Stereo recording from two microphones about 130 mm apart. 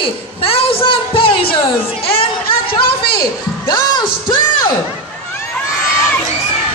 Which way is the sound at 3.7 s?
35° left (ahead or behind).